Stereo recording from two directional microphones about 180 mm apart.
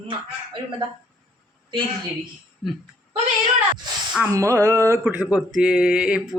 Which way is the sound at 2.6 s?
Centre (ahead or behind).